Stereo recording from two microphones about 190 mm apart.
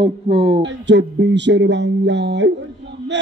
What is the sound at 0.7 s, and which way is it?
A man's voice, 65° right (ahead or behind).